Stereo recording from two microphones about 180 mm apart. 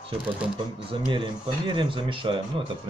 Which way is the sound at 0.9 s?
25° right (ahead or behind).